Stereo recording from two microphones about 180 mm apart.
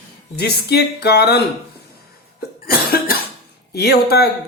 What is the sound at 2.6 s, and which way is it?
Cough, 55° left (ahead or behind).